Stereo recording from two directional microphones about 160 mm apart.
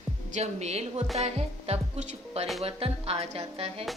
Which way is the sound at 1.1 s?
45° right (ahead or behind).